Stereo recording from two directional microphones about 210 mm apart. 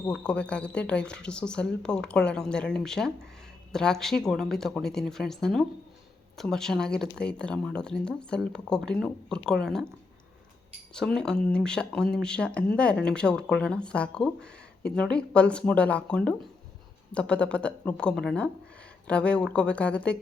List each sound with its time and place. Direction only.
0.0 s speech: 5° left (ahead or behind)
10.9 s speech: 5° left (ahead or behind)